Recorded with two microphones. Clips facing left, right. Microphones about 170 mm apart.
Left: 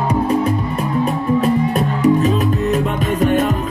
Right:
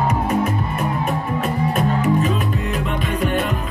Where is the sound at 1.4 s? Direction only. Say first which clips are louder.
Left 4 dB; 40° left (ahead or behind).